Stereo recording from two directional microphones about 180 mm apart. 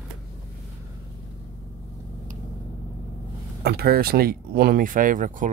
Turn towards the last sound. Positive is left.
turn(degrees=-50)  # may be behind; listen again after turning